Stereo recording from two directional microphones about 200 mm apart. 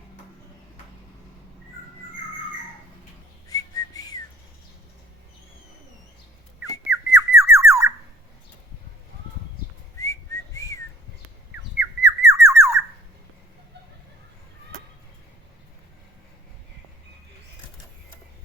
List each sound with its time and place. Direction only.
3.5 s whistling: 20° left (ahead or behind)
6.9 s a sound: 15° right (ahead or behind)
10.0 s whistling: 15° left (ahead or behind)
11.8 s squawk: 15° right (ahead or behind)